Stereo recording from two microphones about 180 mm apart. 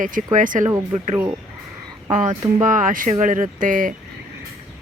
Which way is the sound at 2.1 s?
45° right (ahead or behind).